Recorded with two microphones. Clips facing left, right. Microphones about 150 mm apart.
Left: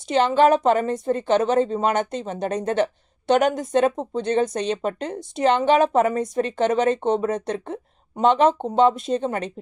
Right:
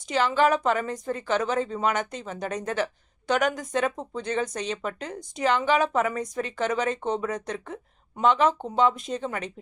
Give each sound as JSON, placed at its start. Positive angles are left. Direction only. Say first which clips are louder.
{"t": 0.1, "sound": "a woman's voice", "louder": "left 5 dB", "side_deg": 25}